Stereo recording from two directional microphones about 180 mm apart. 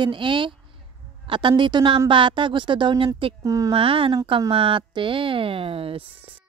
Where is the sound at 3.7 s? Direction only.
30° right (ahead or behind).